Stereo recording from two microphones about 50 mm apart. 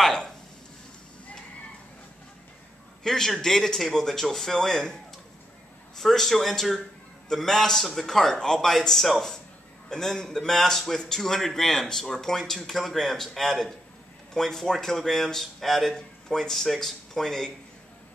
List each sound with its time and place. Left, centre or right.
0.0 s a sound: centre
3.0 s speech: centre
5.9 s speech: centre